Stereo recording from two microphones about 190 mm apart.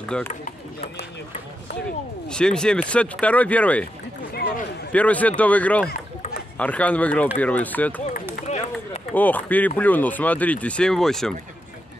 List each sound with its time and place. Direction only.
0.1 s speech: 5° left (ahead or behind)
2.2 s speech: 5° left (ahead or behind)
4.3 s a sound: 55° left (ahead or behind)
4.9 s speech: 10° left (ahead or behind)
8.5 s a sound: 35° left (ahead or behind)
9.1 s speech: 10° left (ahead or behind)